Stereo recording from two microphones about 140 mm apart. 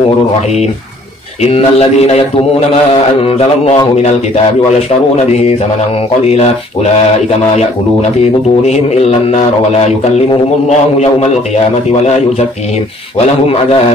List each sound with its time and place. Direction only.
1.4 s a man's voice: 45° left (ahead or behind)
5.1 s a man's voice: 50° left (ahead or behind)
11.0 s a man's voice: 50° left (ahead or behind)